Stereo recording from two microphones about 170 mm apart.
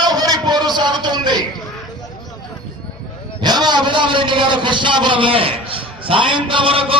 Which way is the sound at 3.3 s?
25° right (ahead or behind).